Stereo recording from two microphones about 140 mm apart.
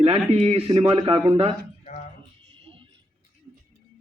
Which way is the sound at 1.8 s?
55° left (ahead or behind).